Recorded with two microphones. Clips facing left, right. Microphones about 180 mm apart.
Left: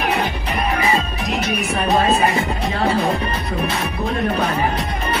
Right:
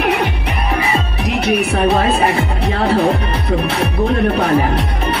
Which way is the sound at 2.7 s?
65° right (ahead or behind).